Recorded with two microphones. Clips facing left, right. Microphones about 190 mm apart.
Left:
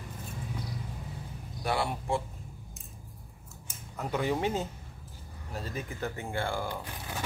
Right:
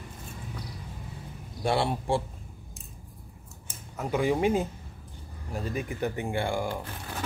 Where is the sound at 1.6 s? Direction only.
25° right (ahead or behind).